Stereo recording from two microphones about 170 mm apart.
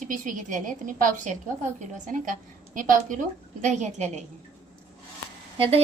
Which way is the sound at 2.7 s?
50° right (ahead or behind).